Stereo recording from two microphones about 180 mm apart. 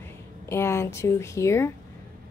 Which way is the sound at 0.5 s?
15° left (ahead or behind).